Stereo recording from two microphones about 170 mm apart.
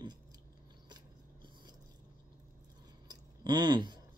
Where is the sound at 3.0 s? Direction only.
25° right (ahead or behind).